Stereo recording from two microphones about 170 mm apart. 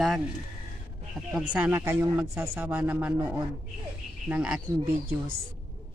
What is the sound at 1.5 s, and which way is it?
Speech, 10° right (ahead or behind).